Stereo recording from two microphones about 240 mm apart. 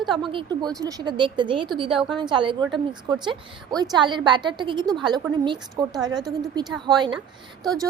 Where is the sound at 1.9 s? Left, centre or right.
Centre.